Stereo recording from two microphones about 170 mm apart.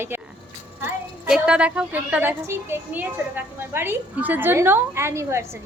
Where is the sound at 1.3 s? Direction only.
5° right (ahead or behind).